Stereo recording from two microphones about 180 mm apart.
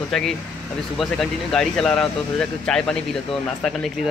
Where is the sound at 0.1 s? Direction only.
Centre (ahead or behind).